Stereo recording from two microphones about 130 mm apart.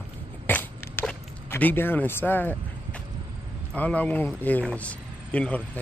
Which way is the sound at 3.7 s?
10° left (ahead or behind).